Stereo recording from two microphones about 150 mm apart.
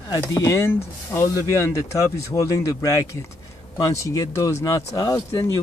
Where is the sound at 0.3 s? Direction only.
20° left (ahead or behind).